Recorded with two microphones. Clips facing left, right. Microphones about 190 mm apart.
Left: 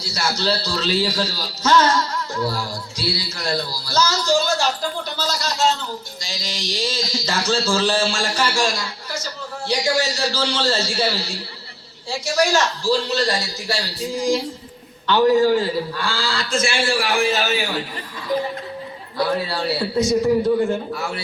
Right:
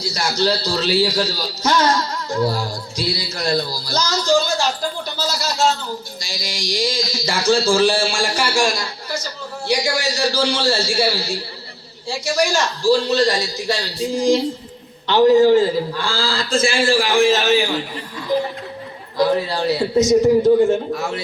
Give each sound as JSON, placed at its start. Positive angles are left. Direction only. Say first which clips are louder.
{"t": 0.0, "sound": "a man's voice", "louder": "right 4 dB", "side_deg": -15}
{"t": 16.0, "sound": "a man's voice", "louder": "right 2 dB", "side_deg": -90}
{"t": 16.5, "sound": "a man's voice", "louder": "right 4 dB", "side_deg": -35}
{"t": 16.7, "sound": "a man's voice", "louder": "right 6 dB", "side_deg": -90}
{"t": 19.1, "sound": "a man's voice", "louder": "right 4 dB", "side_deg": -20}